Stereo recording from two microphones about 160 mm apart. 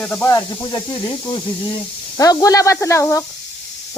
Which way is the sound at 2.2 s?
20° left (ahead or behind).